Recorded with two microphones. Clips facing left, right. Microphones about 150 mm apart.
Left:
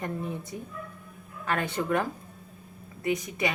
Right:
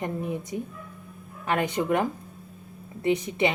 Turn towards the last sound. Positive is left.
turn(degrees=-25)  # may be behind; listen again after turning